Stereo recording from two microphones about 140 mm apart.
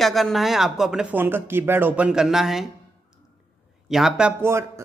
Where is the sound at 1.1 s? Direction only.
15° right (ahead or behind).